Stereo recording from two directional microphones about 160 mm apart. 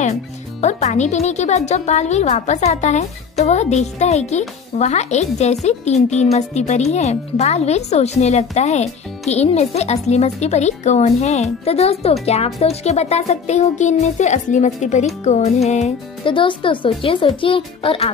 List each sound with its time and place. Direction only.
0.6 s a woman's voice: 45° left (ahead or behind)
16.3 s speech: 30° left (ahead or behind)